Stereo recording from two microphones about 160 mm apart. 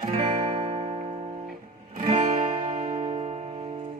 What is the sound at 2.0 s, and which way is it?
Music, 50° right (ahead or behind).